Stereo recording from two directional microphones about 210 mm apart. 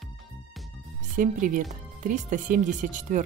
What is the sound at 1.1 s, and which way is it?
Speech, 40° right (ahead or behind).